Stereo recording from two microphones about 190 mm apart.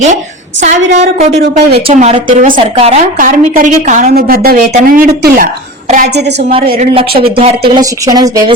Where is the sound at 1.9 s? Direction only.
35° right (ahead or behind).